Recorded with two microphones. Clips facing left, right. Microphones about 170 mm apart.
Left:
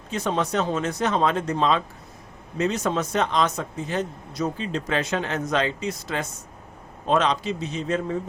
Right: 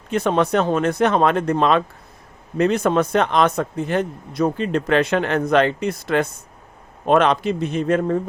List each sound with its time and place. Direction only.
0.1 s speech: 60° right (ahead or behind)